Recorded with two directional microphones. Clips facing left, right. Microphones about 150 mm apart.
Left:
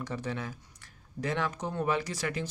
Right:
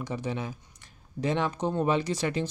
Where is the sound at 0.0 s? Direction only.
15° right (ahead or behind).